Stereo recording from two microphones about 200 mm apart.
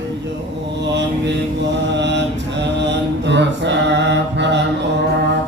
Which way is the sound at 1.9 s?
60° right (ahead or behind).